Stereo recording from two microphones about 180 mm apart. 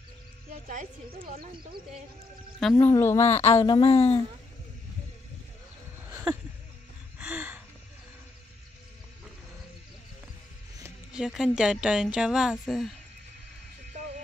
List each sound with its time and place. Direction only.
0.5 s music: 45° right (ahead or behind)
1.2 s speech: 30° right (ahead or behind)
2.8 s speech: 15° left (ahead or behind)
3.3 s speech: 35° left (ahead or behind)
7.2 s a sound: 5° right (ahead or behind)
11.1 s speech: 5° right (ahead or behind)